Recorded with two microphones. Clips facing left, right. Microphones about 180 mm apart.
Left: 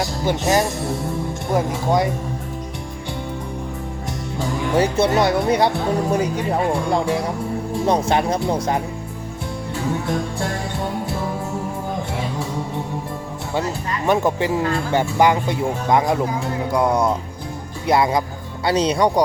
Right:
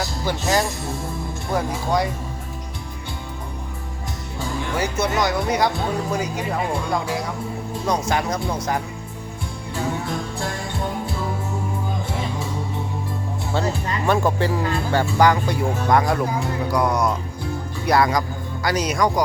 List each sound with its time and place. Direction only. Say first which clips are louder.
0.0 s music: left 4 dB; 20° left (ahead or behind)
1.5 s speech: left 3 dB; 20° left (ahead or behind)
4.8 s speech: left 5 dB; 30° left (ahead or behind)
7.9 s speech: left 4 dB; 25° left (ahead or behind)
14.1 s speech: left 2 dB; 20° left (ahead or behind)